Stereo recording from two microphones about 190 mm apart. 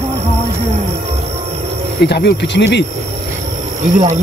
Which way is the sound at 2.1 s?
60° left (ahead or behind).